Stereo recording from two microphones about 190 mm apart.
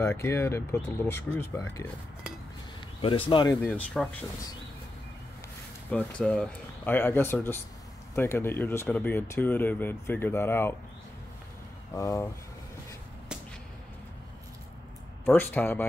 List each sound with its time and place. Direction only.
0.0 s speech: 15° left (ahead or behind)
3.3 s speech: 25° left (ahead or behind)
3.6 s speech: 5° left (ahead or behind)
5.9 s speech: 5° left (ahead or behind)
11.9 s speech: 15° left (ahead or behind)
15.2 s speech: 10° left (ahead or behind)